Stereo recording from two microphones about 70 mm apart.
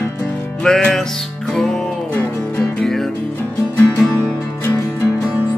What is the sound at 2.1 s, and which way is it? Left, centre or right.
Music, centre.